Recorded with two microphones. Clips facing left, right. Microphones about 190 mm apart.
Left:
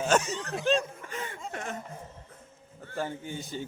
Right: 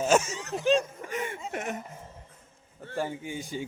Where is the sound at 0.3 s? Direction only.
10° right (ahead or behind).